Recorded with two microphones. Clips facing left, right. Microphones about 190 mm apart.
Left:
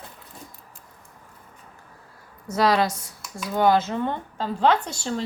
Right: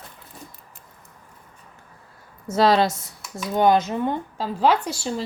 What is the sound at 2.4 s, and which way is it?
A woman's voice, 25° right (ahead or behind).